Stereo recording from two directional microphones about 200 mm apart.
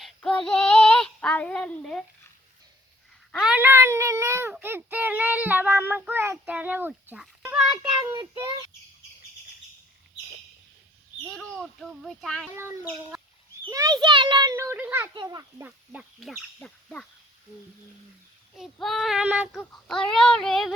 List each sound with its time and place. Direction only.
0.0 s child singing: 5° left (ahead or behind)
3.3 s a child's voice: 5° right (ahead or behind)
7.9 s a child's voice: 20° right (ahead or behind)
11.3 s speech: centre (ahead or behind)
13.7 s a child's voice: 15° right (ahead or behind); by 17.1 s 5° left (ahead or behind)
18.5 s speech: centre (ahead or behind)